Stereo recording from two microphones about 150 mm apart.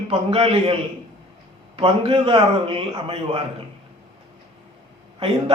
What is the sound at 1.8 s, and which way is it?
Speech, 35° right (ahead or behind).